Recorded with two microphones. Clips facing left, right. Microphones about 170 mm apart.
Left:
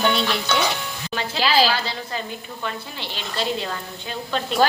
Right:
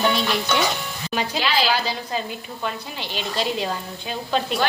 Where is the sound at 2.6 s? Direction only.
15° right (ahead or behind).